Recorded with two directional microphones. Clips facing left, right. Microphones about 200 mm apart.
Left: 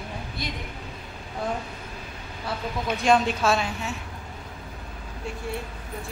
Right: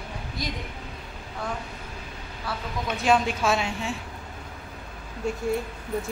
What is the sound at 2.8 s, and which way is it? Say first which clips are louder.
Speech: left 1 dB; 5° right (ahead or behind).